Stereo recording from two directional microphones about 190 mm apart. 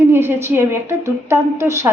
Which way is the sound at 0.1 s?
10° right (ahead or behind).